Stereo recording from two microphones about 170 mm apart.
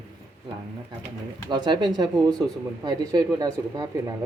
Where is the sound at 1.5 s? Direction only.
25° right (ahead or behind).